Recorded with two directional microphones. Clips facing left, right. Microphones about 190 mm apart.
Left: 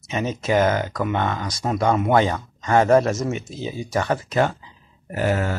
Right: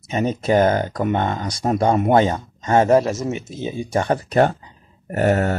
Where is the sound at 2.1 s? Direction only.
25° right (ahead or behind).